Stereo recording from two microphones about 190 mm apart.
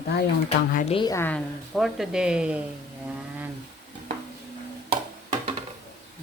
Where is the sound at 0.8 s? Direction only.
25° left (ahead or behind).